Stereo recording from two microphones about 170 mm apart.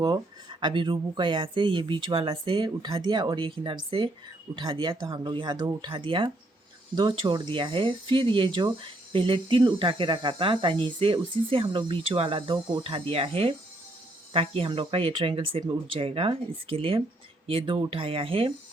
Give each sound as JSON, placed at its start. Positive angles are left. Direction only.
{"t": 0.6, "sound": "speech", "side_deg": -25}